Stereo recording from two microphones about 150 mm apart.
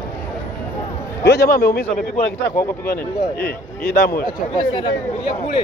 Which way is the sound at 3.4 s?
90° left.